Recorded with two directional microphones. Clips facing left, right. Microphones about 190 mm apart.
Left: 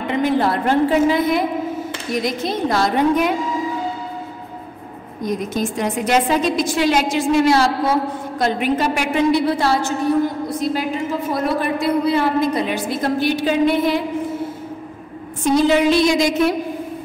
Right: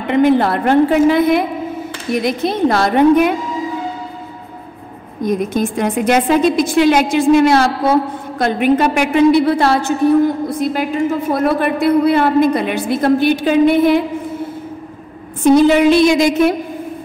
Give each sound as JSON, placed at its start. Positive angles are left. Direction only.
{"t": 0.1, "sound": "a woman's voice", "side_deg": -60}
{"t": 5.2, "sound": "a woman's voice", "side_deg": -55}
{"t": 15.4, "sound": "a woman's voice", "side_deg": -60}